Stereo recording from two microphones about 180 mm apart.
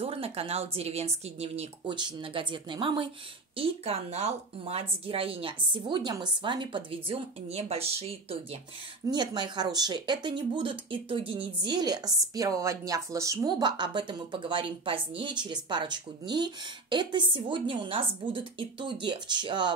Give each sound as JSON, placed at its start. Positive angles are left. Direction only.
{"t": 0.0, "sound": "a woman's voice", "side_deg": -35}